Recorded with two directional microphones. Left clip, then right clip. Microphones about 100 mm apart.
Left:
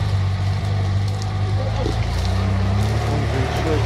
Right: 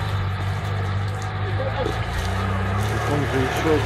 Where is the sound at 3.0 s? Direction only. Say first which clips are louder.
Right 3 dB; 25° left (ahead or behind).